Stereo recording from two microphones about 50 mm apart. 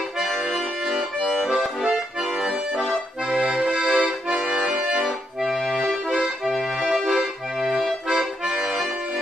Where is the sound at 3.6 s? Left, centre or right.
Right.